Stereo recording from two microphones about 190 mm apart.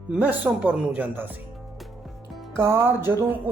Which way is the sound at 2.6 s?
15° right (ahead or behind).